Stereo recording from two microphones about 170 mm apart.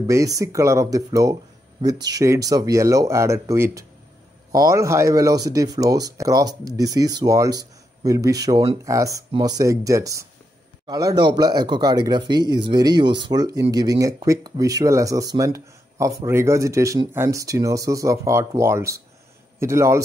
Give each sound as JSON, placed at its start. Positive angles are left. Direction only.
{"t": 0.0, "sound": "speech", "side_deg": -20}